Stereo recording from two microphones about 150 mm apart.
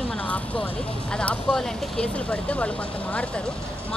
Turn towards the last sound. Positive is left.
turn(degrees=10)  # may be behind; listen again after turning